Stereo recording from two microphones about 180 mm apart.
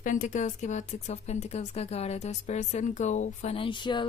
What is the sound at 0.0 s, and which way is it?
A woman's voice, 45° left (ahead or behind).